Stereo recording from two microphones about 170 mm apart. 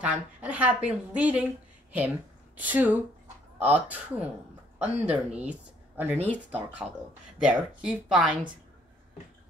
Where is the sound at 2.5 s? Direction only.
10° right (ahead or behind).